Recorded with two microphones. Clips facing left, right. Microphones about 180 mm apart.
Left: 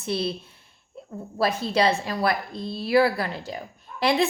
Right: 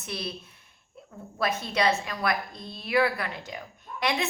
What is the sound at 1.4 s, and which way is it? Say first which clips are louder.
A woman's voice: left 4 dB; 30° left (ahead or behind).